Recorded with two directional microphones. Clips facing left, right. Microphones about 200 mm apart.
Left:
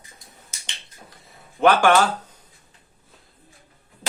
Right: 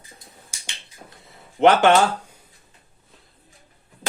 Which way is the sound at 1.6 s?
20° right (ahead or behind).